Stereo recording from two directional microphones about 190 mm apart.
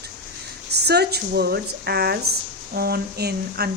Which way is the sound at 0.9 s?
60° right (ahead or behind).